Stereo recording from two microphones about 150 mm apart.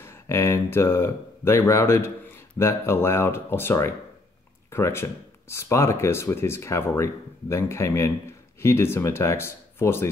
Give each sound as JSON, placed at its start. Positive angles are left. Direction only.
{"t": 0.0, "sound": "speech", "side_deg": 20}